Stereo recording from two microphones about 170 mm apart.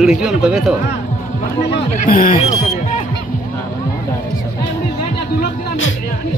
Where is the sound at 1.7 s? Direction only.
55° left (ahead or behind).